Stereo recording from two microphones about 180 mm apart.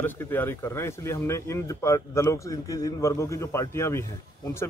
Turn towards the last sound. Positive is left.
turn(degrees=15)  # may be behind; listen again after turning